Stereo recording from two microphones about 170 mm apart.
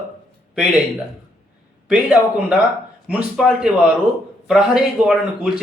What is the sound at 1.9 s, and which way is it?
A man's voice, 5° right (ahead or behind).